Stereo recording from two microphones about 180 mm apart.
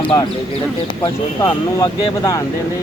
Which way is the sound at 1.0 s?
20° left (ahead or behind).